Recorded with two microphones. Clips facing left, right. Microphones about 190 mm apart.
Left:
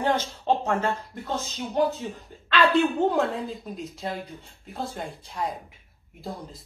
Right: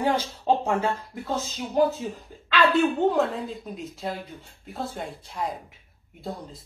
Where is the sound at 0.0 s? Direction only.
10° right (ahead or behind).